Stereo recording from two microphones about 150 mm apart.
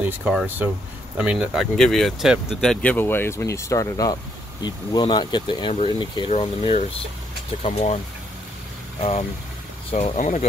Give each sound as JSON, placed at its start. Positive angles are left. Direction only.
{"t": 0.0, "sound": "speech", "side_deg": -5}
{"t": 7.6, "sound": "speech", "side_deg": 45}
{"t": 9.8, "sound": "speech", "side_deg": 40}
{"t": 10.1, "sound": "speech", "side_deg": 55}